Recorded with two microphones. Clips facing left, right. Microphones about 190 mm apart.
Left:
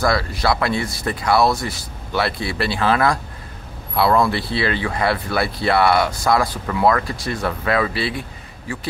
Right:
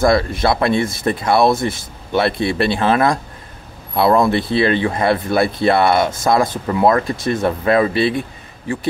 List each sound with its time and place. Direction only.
0.0 s speech: 25° right (ahead or behind)